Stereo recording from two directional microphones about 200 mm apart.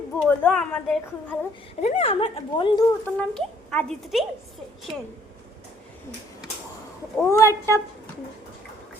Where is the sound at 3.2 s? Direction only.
5° left (ahead or behind).